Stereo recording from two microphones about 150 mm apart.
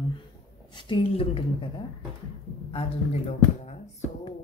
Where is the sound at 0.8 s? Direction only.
35° left (ahead or behind).